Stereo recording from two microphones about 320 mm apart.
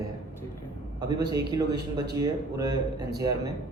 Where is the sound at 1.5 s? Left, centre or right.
Centre.